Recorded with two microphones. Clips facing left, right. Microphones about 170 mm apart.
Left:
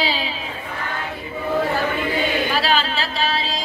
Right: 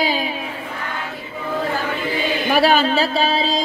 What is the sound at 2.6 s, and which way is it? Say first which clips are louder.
Speech: right 6 dB; 55° right (ahead or behind).